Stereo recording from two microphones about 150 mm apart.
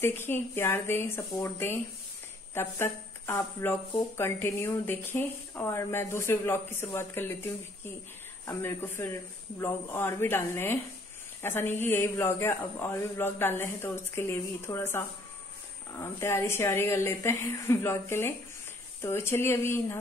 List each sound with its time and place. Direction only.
0.0 s speech: 15° left (ahead or behind)
8.5 s speech: 15° left (ahead or behind)